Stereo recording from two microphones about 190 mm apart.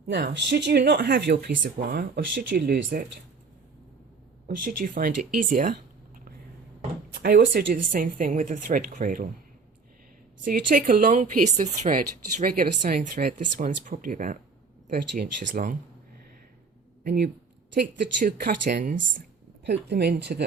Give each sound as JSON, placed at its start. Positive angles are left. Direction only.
{"t": 0.1, "sound": "speech", "side_deg": -60}
{"t": 4.4, "sound": "speech", "side_deg": -50}
{"t": 7.1, "sound": "speech", "side_deg": -55}
{"t": 10.4, "sound": "speech", "side_deg": -45}
{"t": 17.0, "sound": "speech", "side_deg": -55}
{"t": 19.6, "sound": "speech", "side_deg": -60}